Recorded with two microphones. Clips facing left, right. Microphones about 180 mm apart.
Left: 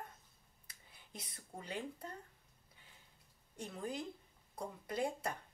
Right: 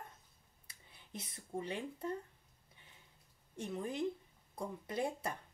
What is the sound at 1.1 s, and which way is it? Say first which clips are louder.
Speech: right 7 dB; 25° right (ahead or behind).